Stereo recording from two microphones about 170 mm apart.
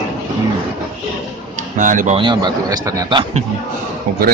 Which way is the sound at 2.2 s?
25° right (ahead or behind).